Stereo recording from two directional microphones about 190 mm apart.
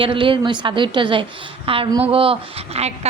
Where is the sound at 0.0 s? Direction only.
25° right (ahead or behind).